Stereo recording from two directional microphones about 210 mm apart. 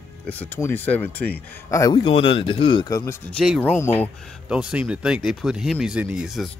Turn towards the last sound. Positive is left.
turn(degrees=0)  # may be behind; listen again after turning